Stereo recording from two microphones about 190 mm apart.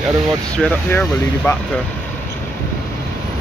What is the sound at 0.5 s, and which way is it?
Speech, 5° left (ahead or behind).